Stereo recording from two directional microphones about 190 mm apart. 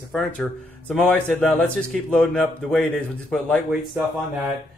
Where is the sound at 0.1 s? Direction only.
Centre (ahead or behind).